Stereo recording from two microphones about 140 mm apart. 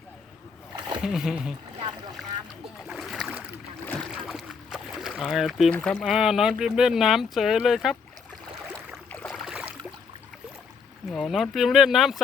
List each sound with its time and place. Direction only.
0.8 s a sound: 35° right (ahead or behind)
1.0 s speech: 5° right (ahead or behind)
2.8 s boat: 5° right (ahead or behind)
5.7 s speech: 5° left (ahead or behind)
9.1 s boat: 10° left (ahead or behind)
9.4 s a sound: 5° right (ahead or behind)
11.1 s speech: centre (ahead or behind)